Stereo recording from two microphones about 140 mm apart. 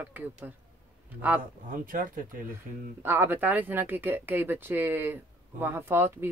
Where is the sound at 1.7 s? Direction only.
75° right (ahead or behind).